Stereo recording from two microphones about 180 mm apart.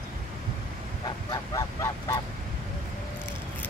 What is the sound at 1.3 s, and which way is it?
Honk, 15° left (ahead or behind).